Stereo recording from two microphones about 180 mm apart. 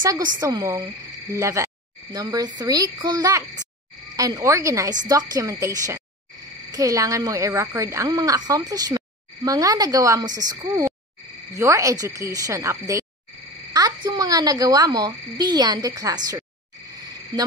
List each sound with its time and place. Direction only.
0.1 s speech: 20° right (ahead or behind)